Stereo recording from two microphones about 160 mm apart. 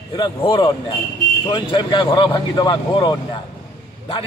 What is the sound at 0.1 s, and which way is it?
A man's voice, 30° left (ahead or behind).